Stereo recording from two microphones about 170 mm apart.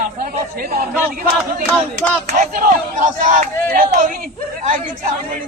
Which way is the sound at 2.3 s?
50° right (ahead or behind).